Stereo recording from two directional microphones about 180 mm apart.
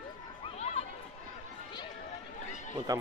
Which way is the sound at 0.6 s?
35° left (ahead or behind).